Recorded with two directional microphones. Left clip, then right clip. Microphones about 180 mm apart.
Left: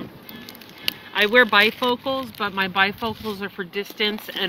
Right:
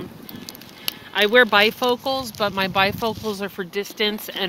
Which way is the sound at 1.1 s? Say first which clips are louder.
Right 1 dB; 75° right (ahead or behind).